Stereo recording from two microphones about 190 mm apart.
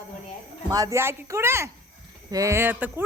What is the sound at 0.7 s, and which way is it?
Speech, 15° right (ahead or behind).